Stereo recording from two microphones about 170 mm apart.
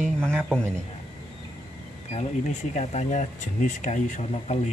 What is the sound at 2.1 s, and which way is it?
Speech, 40° left (ahead or behind).